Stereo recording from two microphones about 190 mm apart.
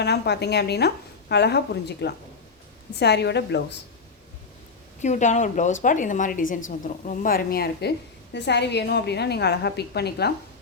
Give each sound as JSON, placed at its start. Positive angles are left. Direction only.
{"t": 0.0, "sound": "a woman's voice", "side_deg": 60}
{"t": 4.9, "sound": "a woman's voice", "side_deg": 40}